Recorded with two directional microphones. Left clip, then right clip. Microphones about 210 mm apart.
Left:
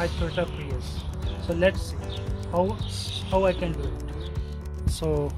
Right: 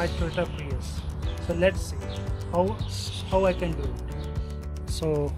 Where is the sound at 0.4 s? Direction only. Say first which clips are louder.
Left 1 dB; centre (ahead or behind).